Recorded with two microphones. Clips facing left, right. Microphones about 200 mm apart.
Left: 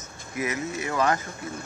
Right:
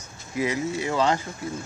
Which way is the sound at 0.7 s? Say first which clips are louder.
Even; 25° right (ahead or behind).